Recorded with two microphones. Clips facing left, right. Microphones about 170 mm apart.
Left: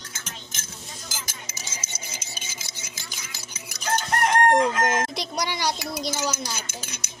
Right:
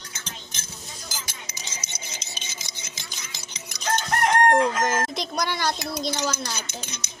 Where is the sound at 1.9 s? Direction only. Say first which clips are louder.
Even; 10° left (ahead or behind).